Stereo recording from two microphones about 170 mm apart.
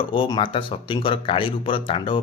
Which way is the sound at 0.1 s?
30° left (ahead or behind).